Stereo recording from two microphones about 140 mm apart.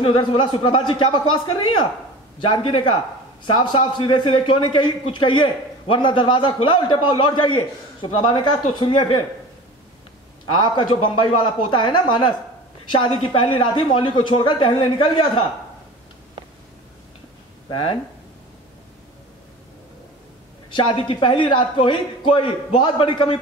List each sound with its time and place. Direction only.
0.0 s a man's voice: 40° left (ahead or behind)
10.5 s a man's voice: 35° left (ahead or behind)
20.7 s a man's voice: 40° left (ahead or behind)